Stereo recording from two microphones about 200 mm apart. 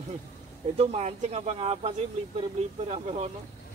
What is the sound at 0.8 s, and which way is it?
Speech, 30° right (ahead or behind).